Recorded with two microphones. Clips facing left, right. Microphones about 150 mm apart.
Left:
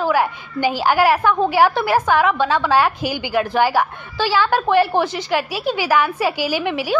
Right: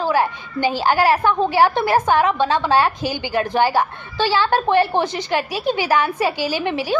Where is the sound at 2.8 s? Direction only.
10° left (ahead or behind).